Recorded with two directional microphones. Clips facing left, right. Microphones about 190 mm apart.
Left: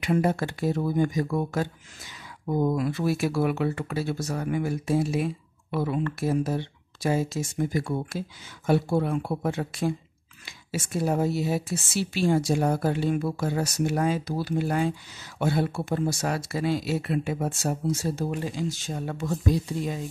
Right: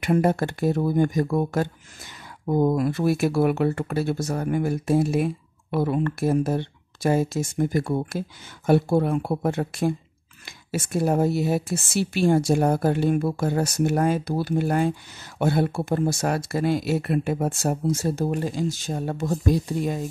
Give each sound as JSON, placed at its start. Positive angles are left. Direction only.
{"t": 0.0, "sound": "speech", "side_deg": -50}